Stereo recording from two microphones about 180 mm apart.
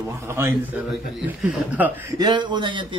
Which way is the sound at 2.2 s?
25° right (ahead or behind).